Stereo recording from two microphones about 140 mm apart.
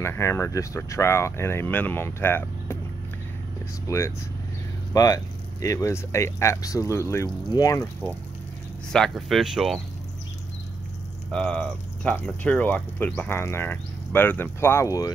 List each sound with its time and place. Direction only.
0.0 s speech: 20° left (ahead or behind)
3.8 s speech: 20° left (ahead or behind)
8.9 s speech: centre (ahead or behind)
11.3 s speech: 5° left (ahead or behind); by 15.1 s 25° left (ahead or behind)